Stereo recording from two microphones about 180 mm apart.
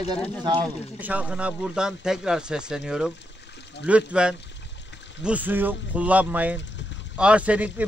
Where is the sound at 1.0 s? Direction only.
10° right (ahead or behind).